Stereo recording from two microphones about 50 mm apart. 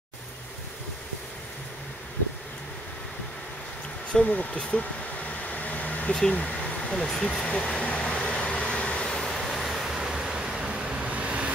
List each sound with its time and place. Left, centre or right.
4.1 s speech: left
5.3 s vehicle: left
6.3 s speech: left
7.4 s vehicle: left
9.3 s vehicle: centre; by 11.5 s right